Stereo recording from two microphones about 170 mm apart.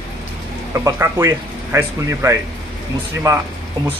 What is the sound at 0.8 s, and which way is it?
Speech, 15° right (ahead or behind).